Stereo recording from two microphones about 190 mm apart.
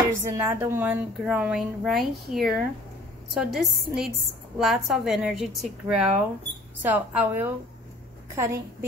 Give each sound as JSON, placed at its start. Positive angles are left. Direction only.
{"t": 0.2, "sound": "a woman's voice", "side_deg": -10}